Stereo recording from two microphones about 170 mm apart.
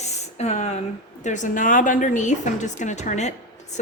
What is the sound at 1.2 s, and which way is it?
Speech, 45° left (ahead or behind).